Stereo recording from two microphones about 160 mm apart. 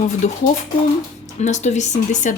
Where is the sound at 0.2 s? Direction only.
45° left (ahead or behind).